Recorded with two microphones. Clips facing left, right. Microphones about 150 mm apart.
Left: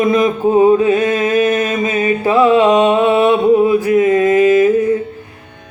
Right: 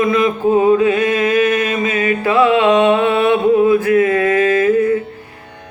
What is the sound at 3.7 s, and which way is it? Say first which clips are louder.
Mantra: left 1 dB; 15° left (ahead or behind).